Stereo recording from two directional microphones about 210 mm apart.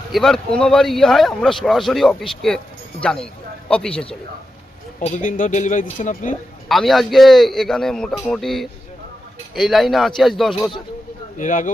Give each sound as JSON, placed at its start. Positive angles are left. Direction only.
{"t": 0.1, "sound": "speech", "side_deg": 0}
{"t": 4.9, "sound": "speech", "side_deg": 35}
{"t": 6.7, "sound": "speech", "side_deg": 0}
{"t": 11.3, "sound": "speech", "side_deg": 40}